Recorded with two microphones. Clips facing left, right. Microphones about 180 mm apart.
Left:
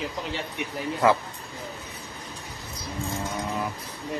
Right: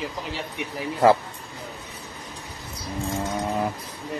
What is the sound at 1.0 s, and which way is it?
Speech, 40° right (ahead or behind).